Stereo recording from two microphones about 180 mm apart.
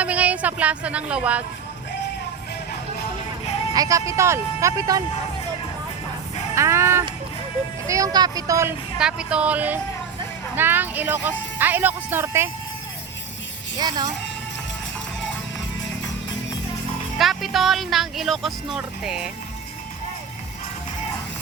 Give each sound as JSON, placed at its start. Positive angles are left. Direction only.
{"t": 0.0, "sound": "a woman's voice", "side_deg": -5}
{"t": 3.7, "sound": "speech", "side_deg": -20}
{"t": 6.5, "sound": "music", "side_deg": -15}
{"t": 7.9, "sound": "speech", "side_deg": -20}
{"t": 9.0, "sound": "speech", "side_deg": -5}
{"t": 13.7, "sound": "speech", "side_deg": -20}
{"t": 17.2, "sound": "speech", "side_deg": 0}